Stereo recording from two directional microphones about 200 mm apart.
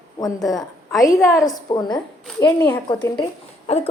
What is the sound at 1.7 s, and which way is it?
A woman's voice, 25° left (ahead or behind).